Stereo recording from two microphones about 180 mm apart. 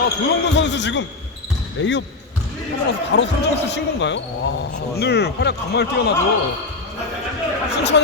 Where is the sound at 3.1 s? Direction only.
70° left (ahead or behind).